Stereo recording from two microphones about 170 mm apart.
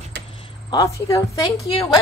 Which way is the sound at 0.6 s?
20° left (ahead or behind).